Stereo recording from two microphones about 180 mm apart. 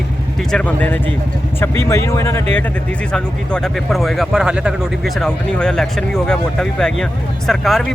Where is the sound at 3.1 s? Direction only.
5° left (ahead or behind).